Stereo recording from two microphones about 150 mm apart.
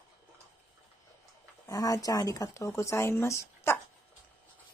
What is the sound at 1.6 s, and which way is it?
Speech, 25° left (ahead or behind).